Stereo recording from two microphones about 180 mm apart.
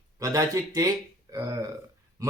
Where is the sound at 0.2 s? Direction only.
20° right (ahead or behind).